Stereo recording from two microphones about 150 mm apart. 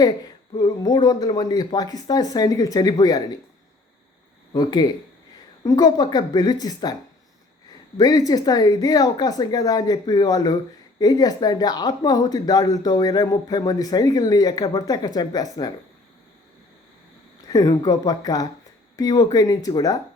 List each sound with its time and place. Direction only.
0.6 s speech: 25° left (ahead or behind)
4.5 s speech: 30° left (ahead or behind)
7.9 s speech: 25° left (ahead or behind)
17.5 s speech: 25° left (ahead or behind)